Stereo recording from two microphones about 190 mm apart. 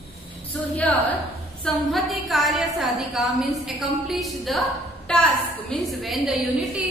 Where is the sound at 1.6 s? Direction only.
Centre (ahead or behind).